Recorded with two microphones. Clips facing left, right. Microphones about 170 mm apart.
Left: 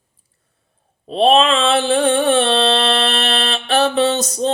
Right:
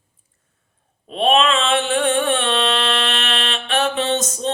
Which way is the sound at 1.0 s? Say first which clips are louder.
Left 4 dB; 35° left (ahead or behind).